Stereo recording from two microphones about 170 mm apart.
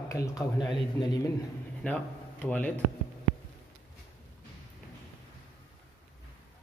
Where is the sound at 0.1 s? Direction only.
20° left (ahead or behind).